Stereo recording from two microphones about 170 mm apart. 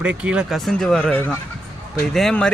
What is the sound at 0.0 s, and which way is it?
Speech, 5° right (ahead or behind).